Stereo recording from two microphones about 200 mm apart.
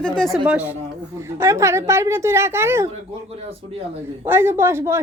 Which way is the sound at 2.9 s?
30° right (ahead or behind).